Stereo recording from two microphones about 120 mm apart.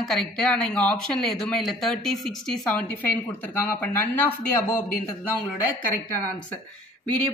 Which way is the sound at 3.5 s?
15° left (ahead or behind).